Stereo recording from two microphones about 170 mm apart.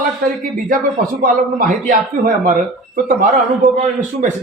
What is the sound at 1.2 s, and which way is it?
Speech, 50° right (ahead or behind).